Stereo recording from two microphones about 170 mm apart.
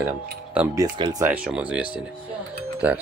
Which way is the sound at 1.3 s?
5° right (ahead or behind).